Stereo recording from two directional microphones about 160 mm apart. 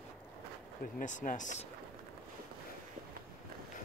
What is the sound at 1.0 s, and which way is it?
Speech, 55° left (ahead or behind).